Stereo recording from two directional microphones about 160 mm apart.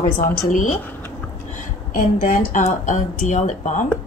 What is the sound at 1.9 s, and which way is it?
Speech, 60° left (ahead or behind).